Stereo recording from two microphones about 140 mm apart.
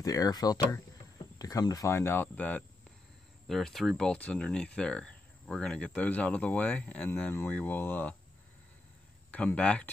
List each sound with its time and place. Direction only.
0.0 s speech: 25° left (ahead or behind)
9.3 s speech: 10° left (ahead or behind)